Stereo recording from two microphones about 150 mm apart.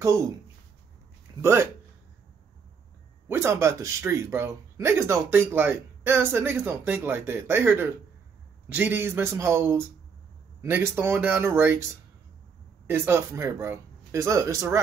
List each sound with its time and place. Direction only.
0.0 s speech: 20° right (ahead or behind)
1.4 s speech: 15° right (ahead or behind)
3.3 s speech: 15° right (ahead or behind)
12.8 s speech: 15° right (ahead or behind)